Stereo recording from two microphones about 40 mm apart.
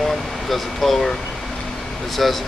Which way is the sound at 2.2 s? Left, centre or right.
Centre.